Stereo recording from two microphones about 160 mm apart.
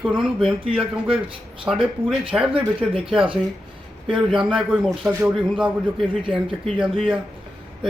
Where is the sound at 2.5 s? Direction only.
35° right (ahead or behind).